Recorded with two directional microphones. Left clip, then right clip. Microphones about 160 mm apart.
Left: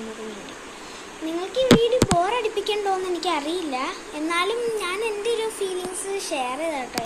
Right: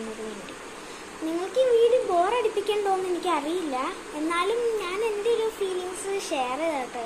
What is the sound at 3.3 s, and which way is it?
A child's voice, 10° left (ahead or behind).